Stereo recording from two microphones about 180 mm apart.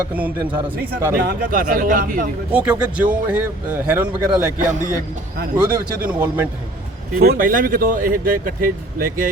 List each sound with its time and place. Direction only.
0.1 s a man's voice: 10° right (ahead or behind)
1.2 s speech: 50° right (ahead or behind)
2.5 s a man's voice: 5° right (ahead or behind)
4.5 s speech: 45° right (ahead or behind)
5.5 s speech: 25° right (ahead or behind)
6.1 s a man's voice: 10° right (ahead or behind)
7.2 s speech: 55° right (ahead or behind)